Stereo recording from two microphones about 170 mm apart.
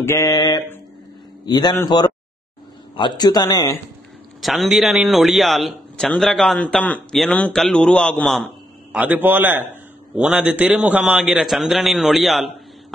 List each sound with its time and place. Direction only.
0.0 s a man's voice: 20° left (ahead or behind)
4.4 s a man's voice: centre (ahead or behind)